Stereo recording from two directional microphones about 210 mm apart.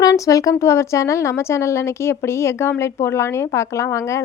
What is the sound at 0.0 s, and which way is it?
A woman's voice, 15° left (ahead or behind).